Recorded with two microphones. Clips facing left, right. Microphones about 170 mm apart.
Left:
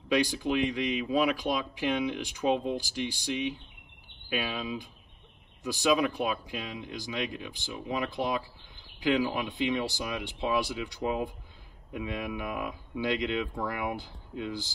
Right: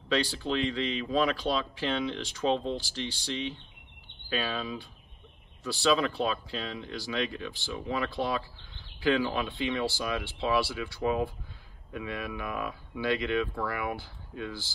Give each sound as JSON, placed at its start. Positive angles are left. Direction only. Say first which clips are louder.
{"t": 0.1, "sound": "speech", "louder": "left 2 dB", "side_deg": 15}